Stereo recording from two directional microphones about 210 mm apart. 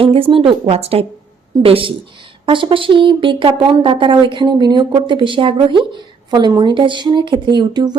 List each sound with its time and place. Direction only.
0.0 s speech: 25° right (ahead or behind)